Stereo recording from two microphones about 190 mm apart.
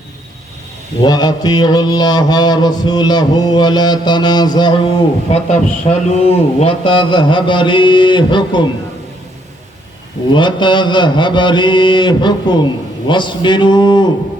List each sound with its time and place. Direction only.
1.0 s mantra: 20° left (ahead or behind)
10.3 s mantra: 25° left (ahead or behind)